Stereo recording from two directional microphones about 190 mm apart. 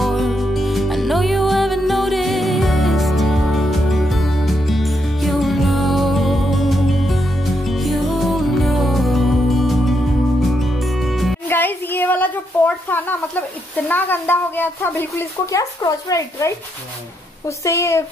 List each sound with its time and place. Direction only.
0.0 s music: centre (ahead or behind)
11.4 s a sound: 10° left (ahead or behind)
13.7 s speech: 10° left (ahead or behind)